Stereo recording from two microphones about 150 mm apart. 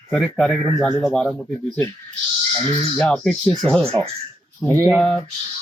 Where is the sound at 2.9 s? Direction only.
5° left (ahead or behind).